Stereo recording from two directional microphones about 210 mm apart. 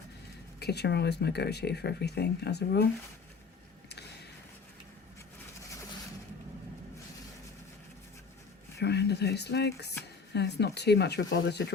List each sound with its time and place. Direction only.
0.6 s speech: 50° left (ahead or behind)
8.8 s speech: 50° left (ahead or behind)